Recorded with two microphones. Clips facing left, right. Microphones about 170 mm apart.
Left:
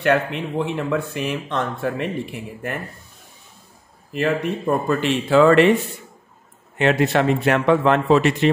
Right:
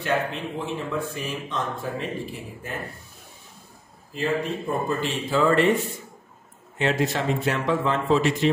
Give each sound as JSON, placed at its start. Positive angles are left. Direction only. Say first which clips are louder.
{"t": 0.0, "sound": "speech", "louder": "left 6 dB", "side_deg": 65}
{"t": 4.1, "sound": "speech", "louder": "left 4 dB", "side_deg": 70}
{"t": 6.8, "sound": "speech", "louder": "left 6 dB", "side_deg": 65}